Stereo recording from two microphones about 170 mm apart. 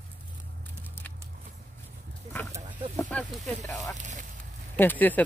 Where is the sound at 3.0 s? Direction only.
5° left (ahead or behind).